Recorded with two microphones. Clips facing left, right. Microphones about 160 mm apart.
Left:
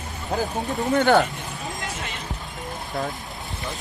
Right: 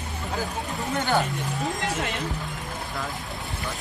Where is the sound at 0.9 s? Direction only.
75° left (ahead or behind).